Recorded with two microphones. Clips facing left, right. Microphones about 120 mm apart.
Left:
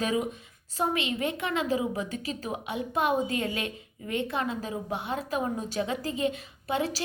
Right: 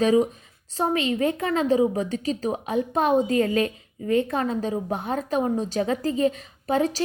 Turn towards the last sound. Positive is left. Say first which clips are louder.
# right 6 dB
turn(degrees=-35)  # may be behind; listen again after turning